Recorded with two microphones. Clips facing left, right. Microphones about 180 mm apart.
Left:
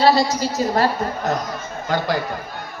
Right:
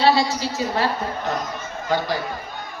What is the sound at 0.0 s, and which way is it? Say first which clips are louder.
Speech: left 2 dB; 40° left (ahead or behind).